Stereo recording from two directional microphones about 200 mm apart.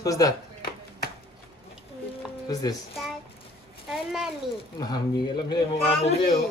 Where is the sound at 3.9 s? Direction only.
5° right (ahead or behind).